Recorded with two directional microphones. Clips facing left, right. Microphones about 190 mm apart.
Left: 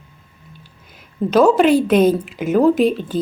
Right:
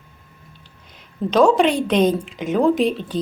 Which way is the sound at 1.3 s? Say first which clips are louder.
Left 3 dB; 5° left (ahead or behind).